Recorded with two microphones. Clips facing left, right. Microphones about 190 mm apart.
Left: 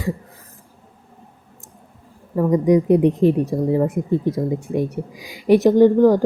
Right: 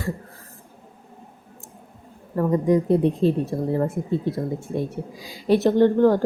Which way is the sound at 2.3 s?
15° left (ahead or behind).